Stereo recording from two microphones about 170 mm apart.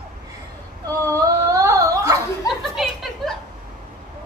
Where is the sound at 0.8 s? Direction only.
20° right (ahead or behind).